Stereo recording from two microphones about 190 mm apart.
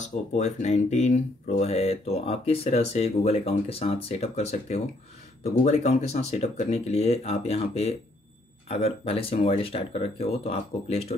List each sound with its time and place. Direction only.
0.0 s speech: 40° left (ahead or behind)